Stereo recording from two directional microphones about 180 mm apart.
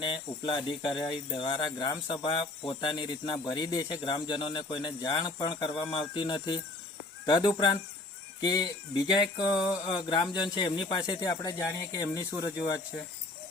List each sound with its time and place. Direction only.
0.0 s speech: 30° left (ahead or behind)